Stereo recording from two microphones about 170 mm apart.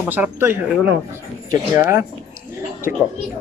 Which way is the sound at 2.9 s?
5° right (ahead or behind).